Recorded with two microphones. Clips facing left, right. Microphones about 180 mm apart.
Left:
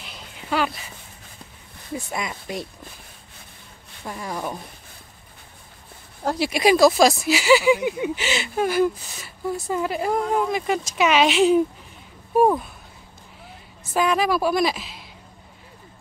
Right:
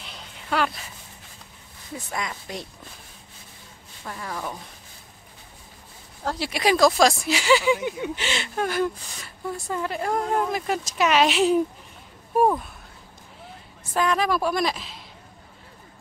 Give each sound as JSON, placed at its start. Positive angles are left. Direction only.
{"t": 0.0, "sound": "a sound", "side_deg": 0}
{"t": 2.0, "sound": "speech", "side_deg": 10}
{"t": 4.0, "sound": "speech", "side_deg": 15}
{"t": 6.2, "sound": "a woman's voice", "side_deg": 15}
{"t": 13.9, "sound": "a woman's voice", "side_deg": 5}